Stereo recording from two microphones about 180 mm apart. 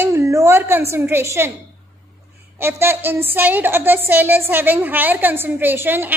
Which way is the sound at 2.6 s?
10° right (ahead or behind).